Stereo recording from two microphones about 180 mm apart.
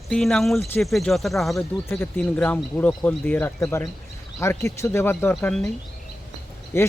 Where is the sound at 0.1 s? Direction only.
Centre (ahead or behind).